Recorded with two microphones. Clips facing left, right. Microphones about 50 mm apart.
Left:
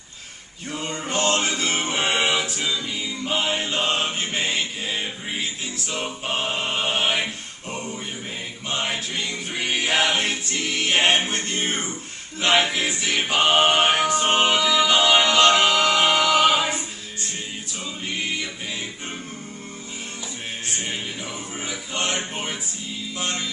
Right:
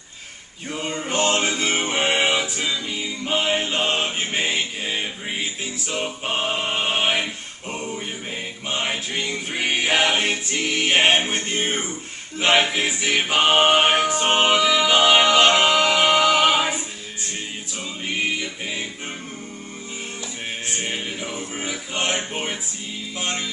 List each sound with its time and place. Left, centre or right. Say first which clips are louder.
0.7 s music: right 2 dB; centre
6.2 s choir: right 1 dB; centre
7.7 s music: right 2 dB; centre
9.1 s choir: right 2 dB; centre
12.6 s music: right 2 dB; centre
20.8 s music: right 2 dB; centre